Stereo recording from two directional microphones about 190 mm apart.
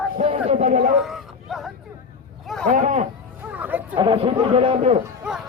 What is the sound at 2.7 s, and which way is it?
Speech, 40° right (ahead or behind).